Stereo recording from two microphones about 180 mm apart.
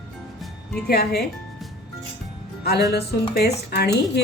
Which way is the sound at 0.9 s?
60° left (ahead or behind).